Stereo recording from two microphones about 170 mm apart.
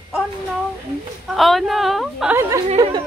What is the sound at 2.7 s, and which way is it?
Speech, 25° right (ahead or behind).